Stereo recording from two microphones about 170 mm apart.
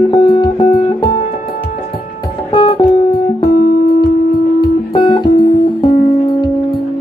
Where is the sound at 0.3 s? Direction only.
30° left (ahead or behind).